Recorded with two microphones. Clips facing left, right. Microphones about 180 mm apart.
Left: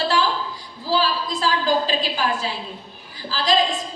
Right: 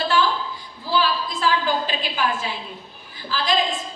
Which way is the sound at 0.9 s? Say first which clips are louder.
Left 1 dB; 35° left (ahead or behind).